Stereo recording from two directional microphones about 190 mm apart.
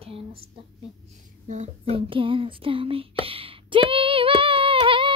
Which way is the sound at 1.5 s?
35° right (ahead or behind).